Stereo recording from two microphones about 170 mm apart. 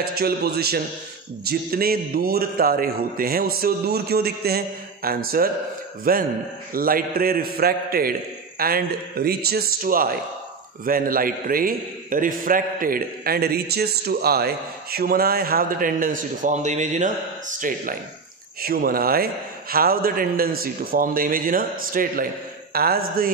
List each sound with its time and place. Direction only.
0.1 s a man's voice: 65° right (ahead or behind)